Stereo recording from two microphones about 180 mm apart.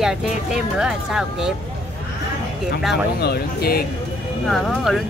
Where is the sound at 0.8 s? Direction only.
5° right (ahead or behind).